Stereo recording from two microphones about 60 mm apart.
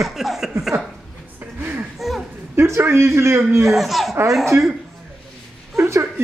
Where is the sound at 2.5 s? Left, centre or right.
Right.